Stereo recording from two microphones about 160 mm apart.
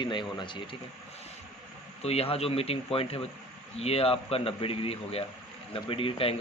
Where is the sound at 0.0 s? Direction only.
30° left (ahead or behind).